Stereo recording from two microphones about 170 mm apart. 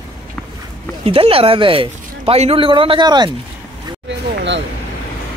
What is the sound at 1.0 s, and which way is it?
Speech, 35° right (ahead or behind).